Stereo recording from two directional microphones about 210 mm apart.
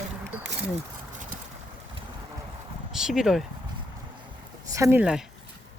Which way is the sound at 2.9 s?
Centre (ahead or behind).